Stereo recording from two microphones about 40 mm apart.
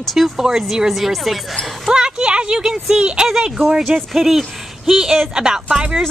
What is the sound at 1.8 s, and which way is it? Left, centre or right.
Speech, centre.